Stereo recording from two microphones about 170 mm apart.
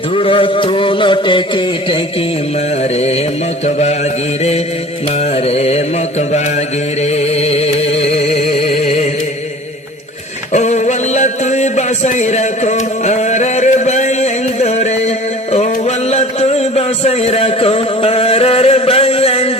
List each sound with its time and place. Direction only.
0.1 s music: 30° left (ahead or behind)
5.5 s music: 35° left (ahead or behind)
7.0 s a sound: 40° left (ahead or behind)
10.5 s music: 45° left (ahead or behind)